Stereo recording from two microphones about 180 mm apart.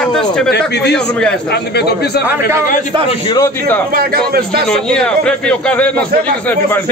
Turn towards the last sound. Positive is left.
turn(degrees=5)  # may be behind; listen again after turning